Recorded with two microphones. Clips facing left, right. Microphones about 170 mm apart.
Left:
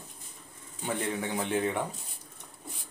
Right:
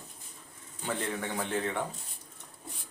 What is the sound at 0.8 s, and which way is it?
Speech, 15° left (ahead or behind).